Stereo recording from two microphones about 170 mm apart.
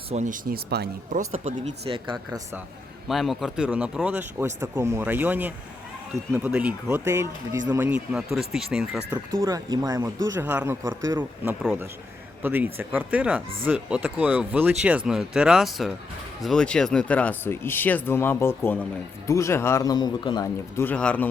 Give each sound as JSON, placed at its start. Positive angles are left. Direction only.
{"t": 0.1, "sound": "speech", "side_deg": -45}
{"t": 1.1, "sound": "speech", "side_deg": -45}
{"t": 3.1, "sound": "speech", "side_deg": 0}
{"t": 9.3, "sound": "speech", "side_deg": -20}